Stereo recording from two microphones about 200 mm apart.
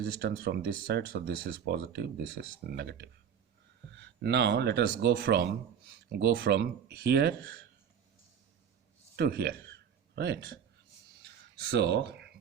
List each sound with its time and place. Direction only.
0.0 s speech: 55° right (ahead or behind)
9.1 s speech: 55° right (ahead or behind)
11.2 s a sound: 55° right (ahead or behind)